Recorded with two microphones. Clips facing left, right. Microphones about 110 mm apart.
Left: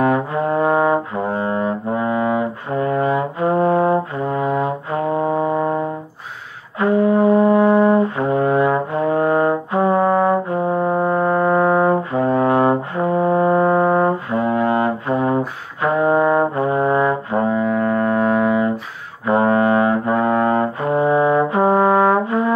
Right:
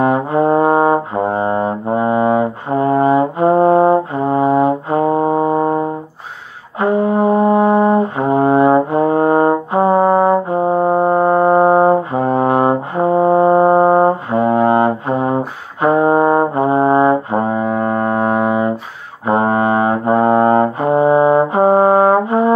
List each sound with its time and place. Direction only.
0.0 s brass instrument: 30° right (ahead or behind)